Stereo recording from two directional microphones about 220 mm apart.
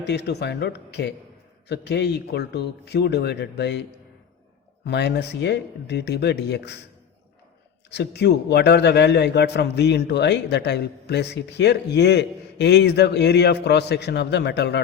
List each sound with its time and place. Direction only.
0.0 s a man's voice: 50° left (ahead or behind)
4.9 s a man's voice: 50° left (ahead or behind)
7.9 s a man's voice: 50° left (ahead or behind)